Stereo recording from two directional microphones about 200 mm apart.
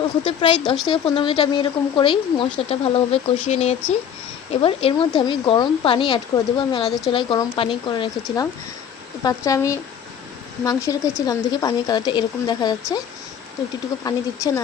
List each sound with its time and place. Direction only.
0.3 s speech: 25° left (ahead or behind)
14.0 s speech: 15° left (ahead or behind)